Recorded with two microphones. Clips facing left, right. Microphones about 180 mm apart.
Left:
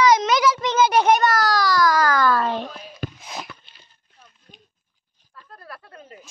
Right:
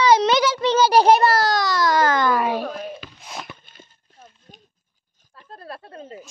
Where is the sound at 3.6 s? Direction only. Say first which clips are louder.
Right 8 dB; 45° right (ahead or behind).